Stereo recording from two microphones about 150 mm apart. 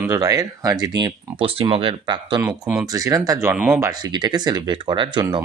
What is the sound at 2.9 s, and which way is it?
Speech, 25° right (ahead or behind).